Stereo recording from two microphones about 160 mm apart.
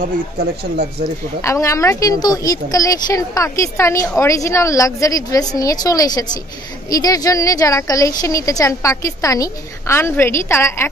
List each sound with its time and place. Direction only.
0.0 s speech: 70° right (ahead or behind)
1.4 s a woman's voice: 20° left (ahead or behind)